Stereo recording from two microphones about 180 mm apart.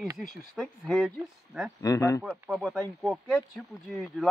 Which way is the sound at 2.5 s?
Centre (ahead or behind).